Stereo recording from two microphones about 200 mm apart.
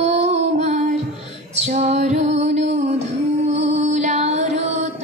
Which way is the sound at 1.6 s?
35° right (ahead or behind).